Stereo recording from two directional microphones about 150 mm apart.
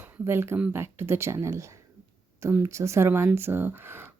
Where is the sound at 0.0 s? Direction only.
15° right (ahead or behind).